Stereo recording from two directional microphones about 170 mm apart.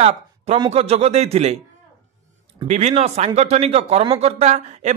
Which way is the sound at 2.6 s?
45° right (ahead or behind).